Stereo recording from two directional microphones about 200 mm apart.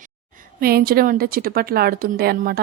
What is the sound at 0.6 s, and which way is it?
A woman's voice, 50° right (ahead or behind).